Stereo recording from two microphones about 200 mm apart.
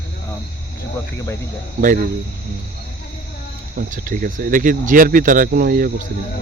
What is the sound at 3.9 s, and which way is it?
Speech, 45° right (ahead or behind).